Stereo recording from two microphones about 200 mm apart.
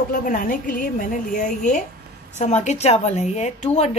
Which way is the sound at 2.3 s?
35° left (ahead or behind).